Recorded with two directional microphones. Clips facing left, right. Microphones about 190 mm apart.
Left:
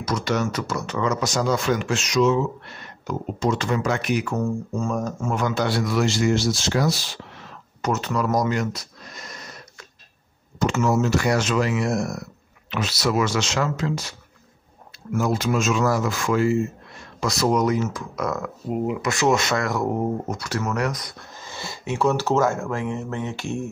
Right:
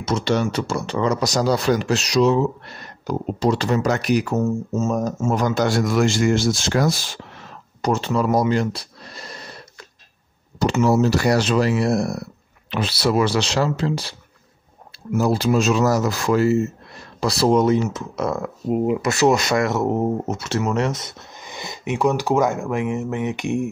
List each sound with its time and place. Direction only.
0.0 s speech: 25° right (ahead or behind)
4.4 s speech: 25° right (ahead or behind)
5.3 s a man's voice: 40° right (ahead or behind)
7.8 s a sound: 30° right (ahead or behind)
10.6 s speech: 35° right (ahead or behind)
15.1 s speech: 35° right (ahead or behind)
19.5 s speech: 25° right (ahead or behind)